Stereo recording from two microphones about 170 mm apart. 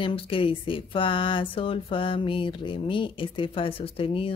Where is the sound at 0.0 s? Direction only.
30° left (ahead or behind).